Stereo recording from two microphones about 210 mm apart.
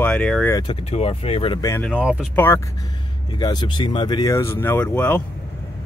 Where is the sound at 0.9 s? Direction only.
30° left (ahead or behind); by 1.9 s 10° left (ahead or behind).